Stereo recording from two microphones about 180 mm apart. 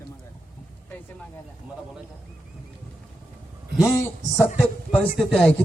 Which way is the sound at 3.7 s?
15° left (ahead or behind).